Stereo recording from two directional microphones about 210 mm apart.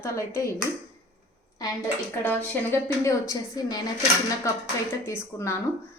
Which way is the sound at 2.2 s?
10° left (ahead or behind).